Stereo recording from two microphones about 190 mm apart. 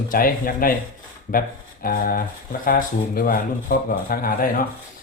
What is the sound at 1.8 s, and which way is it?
Speech, 50° left (ahead or behind).